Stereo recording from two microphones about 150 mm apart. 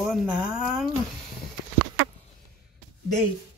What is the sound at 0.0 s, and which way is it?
Speech, centre (ahead or behind).